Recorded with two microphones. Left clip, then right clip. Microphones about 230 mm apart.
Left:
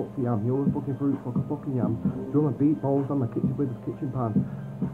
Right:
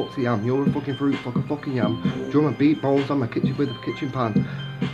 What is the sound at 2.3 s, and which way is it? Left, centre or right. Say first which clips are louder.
Speech: right 4 dB; right.